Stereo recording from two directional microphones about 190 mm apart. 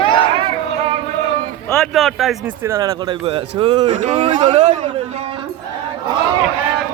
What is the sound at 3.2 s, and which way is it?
Speech, 30° right (ahead or behind).